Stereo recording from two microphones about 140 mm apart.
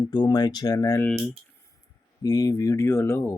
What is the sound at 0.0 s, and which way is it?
Speech, 30° left (ahead or behind).